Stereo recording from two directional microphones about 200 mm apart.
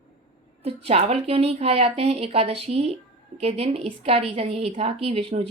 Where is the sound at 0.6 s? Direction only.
30° right (ahead or behind).